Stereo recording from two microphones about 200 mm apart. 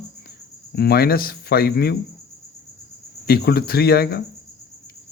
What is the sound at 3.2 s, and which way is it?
Speech, 50° left (ahead or behind).